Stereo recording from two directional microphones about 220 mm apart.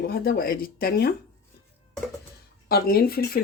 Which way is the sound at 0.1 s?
45° left (ahead or behind).